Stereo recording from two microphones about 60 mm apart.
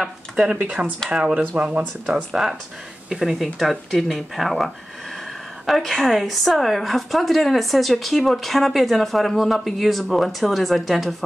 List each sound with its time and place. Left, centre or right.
0.6 s speech: right
1.1 s speech: centre
3.1 s a woman's voice: centre
5.7 s a woman's voice: centre